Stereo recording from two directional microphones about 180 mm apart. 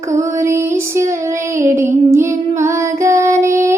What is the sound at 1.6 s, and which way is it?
Child singing, 15° right (ahead or behind).